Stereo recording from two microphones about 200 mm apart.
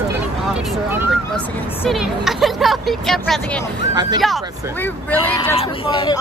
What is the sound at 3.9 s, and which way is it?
Speech, 20° right (ahead or behind).